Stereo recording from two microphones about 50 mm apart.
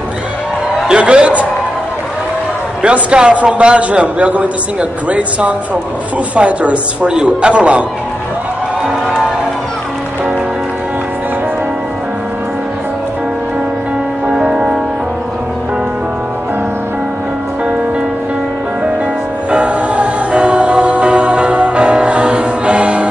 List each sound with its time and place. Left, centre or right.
0.8 s a man's voice: right
2.8 s a woman's voice: centre
6.3 s a woman's voice: right
14.2 s music: centre
19.5 s music: right